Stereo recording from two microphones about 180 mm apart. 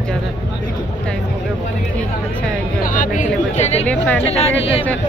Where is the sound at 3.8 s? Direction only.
10° left (ahead or behind).